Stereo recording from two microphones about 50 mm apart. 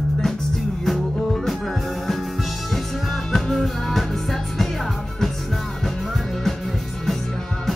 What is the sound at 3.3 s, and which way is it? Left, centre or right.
Music, centre.